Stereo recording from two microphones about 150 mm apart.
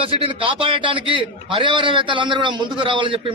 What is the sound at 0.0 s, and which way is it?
A man's voice, 35° right (ahead or behind).